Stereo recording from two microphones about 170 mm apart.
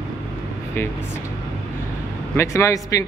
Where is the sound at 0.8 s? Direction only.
15° left (ahead or behind).